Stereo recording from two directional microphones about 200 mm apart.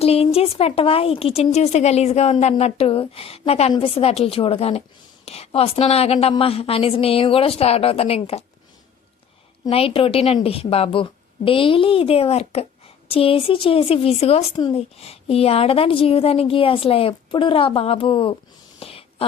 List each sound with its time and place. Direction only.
0.0 s speech: 30° left (ahead or behind)
9.6 s speech: 30° left (ahead or behind)
18.8 s a sound: 30° left (ahead or behind)